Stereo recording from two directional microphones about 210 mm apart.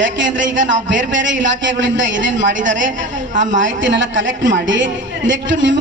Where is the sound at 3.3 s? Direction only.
35° right (ahead or behind).